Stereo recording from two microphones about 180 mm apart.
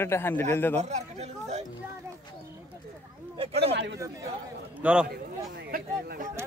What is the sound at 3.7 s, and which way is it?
Speech, 70° right (ahead or behind).